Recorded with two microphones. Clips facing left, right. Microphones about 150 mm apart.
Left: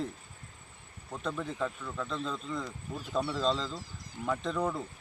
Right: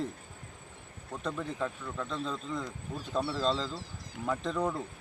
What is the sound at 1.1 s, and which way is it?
Speech, 5° right (ahead or behind).